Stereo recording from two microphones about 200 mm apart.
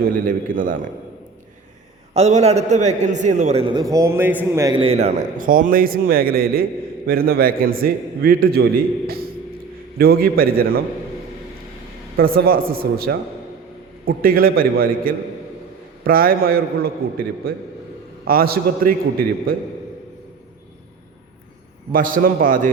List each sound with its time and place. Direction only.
0.3 s a man's voice: 45° right (ahead or behind)
2.1 s a man's voice: 35° right (ahead or behind); by 4.8 s 15° right (ahead or behind)
4.8 s a man's voice: 30° right (ahead or behind); by 10.8 s 50° right (ahead or behind)
12.1 s a man's voice: 45° right (ahead or behind)
21.9 s a man's voice: 45° right (ahead or behind)